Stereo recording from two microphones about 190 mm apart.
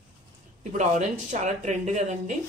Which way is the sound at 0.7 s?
40° right (ahead or behind).